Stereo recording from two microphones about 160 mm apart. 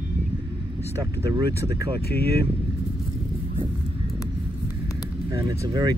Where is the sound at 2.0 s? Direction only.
80° left.